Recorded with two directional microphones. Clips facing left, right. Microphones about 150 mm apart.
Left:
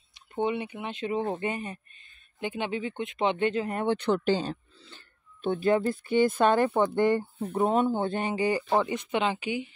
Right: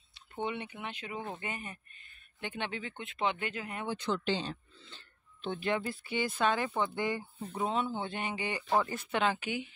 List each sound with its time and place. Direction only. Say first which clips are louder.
0.1 s speech: left 8 dB; 20° left (ahead or behind)
1.2 s speech: left 11 dB; 40° left (ahead or behind)
1.5 s a sound: left 8 dB; 30° left (ahead or behind)
2.4 s speech: left 7 dB; 15° left (ahead or behind)
3.8 s speech: left 7 dB; 65° left (ahead or behind); by 8.7 s 35° left (ahead or behind)
8.7 s speech: left 4 dB; 15° left (ahead or behind)